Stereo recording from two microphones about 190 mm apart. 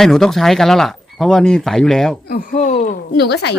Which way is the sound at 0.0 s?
Centre (ahead or behind).